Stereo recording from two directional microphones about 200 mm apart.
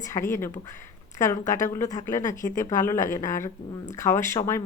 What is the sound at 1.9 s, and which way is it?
Speech, 40° left (ahead or behind).